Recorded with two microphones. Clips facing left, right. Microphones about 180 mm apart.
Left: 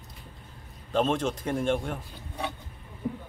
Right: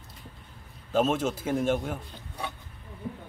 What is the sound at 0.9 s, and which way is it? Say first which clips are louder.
Speech: right 1 dB; 5° right (ahead or behind).